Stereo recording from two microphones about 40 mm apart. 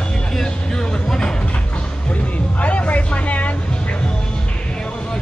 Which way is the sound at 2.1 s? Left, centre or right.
Left.